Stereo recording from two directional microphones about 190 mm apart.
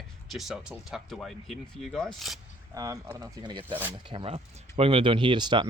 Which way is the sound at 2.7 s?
20° right (ahead or behind).